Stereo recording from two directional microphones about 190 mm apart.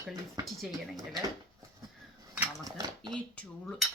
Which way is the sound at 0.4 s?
Centre (ahead or behind).